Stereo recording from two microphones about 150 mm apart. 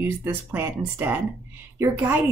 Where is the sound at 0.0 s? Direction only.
15° right (ahead or behind).